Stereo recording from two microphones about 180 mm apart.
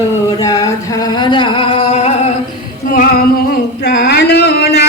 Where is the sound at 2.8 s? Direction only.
50° left (ahead or behind).